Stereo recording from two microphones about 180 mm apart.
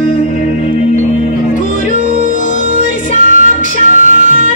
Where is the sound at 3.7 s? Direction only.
45° right (ahead or behind).